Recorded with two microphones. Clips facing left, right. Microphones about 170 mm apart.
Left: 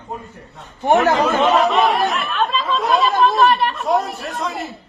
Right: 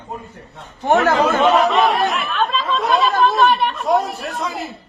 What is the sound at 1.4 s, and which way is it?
Speech, centre (ahead or behind).